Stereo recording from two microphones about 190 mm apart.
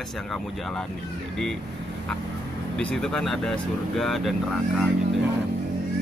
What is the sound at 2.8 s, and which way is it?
Speech, 5° left (ahead or behind).